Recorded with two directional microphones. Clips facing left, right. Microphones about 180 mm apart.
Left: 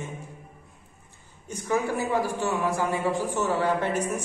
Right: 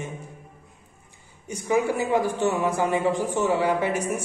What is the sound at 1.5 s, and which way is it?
A man's voice, 15° right (ahead or behind).